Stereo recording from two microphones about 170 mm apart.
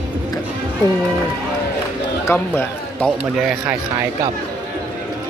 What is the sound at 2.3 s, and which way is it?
Speech, 10° left (ahead or behind).